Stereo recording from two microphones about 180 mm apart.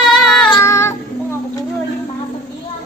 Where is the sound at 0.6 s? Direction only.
15° left (ahead or behind).